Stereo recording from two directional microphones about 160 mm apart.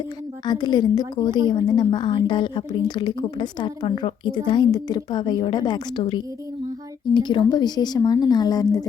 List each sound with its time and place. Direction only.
0.4 s a woman's voice: 25° left (ahead or behind)